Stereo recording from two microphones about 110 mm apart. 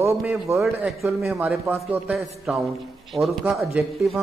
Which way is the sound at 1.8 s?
15° right (ahead or behind).